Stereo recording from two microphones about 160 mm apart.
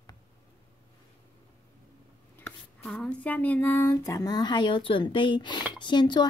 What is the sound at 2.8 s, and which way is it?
Speech, 5° left (ahead or behind).